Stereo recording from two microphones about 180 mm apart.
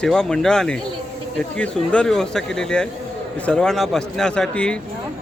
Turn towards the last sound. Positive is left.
turn(degrees=5)  # may be behind; listen again after turning